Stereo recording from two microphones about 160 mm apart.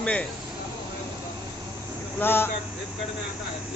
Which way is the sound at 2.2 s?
15° left (ahead or behind).